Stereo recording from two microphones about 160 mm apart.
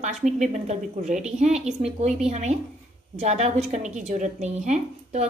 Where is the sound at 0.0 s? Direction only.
45° right (ahead or behind).